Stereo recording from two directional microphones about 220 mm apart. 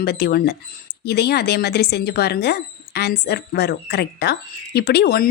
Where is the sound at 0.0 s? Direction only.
45° left (ahead or behind).